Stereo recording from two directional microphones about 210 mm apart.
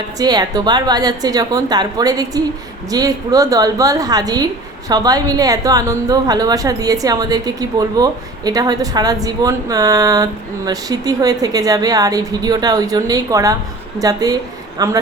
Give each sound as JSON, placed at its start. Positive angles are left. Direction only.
{"t": 0.2, "sound": "a woman's voice", "side_deg": -20}